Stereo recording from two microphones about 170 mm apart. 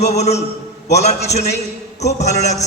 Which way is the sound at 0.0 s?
40° left (ahead or behind).